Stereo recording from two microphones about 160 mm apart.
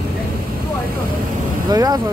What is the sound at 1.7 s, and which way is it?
Speech, 25° right (ahead or behind).